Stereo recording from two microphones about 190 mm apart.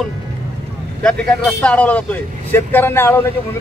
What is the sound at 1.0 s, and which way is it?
Speech, 5° left (ahead or behind).